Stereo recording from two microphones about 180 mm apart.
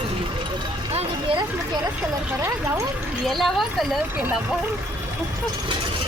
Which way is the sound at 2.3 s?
20° right (ahead or behind).